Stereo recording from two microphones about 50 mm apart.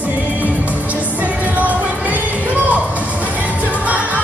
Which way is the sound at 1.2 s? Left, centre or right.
Right.